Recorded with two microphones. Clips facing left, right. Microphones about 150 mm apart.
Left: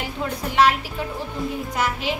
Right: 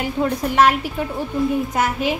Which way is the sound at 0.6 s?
45° right (ahead or behind).